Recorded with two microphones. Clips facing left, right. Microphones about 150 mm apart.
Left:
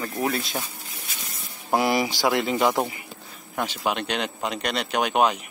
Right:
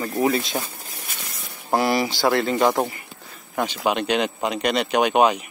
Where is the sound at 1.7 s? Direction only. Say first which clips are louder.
Right 1 dB; 15° left (ahead or behind).